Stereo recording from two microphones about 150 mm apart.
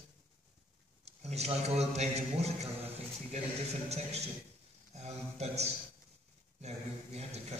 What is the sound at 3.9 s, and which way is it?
A man's voice, 45° right (ahead or behind).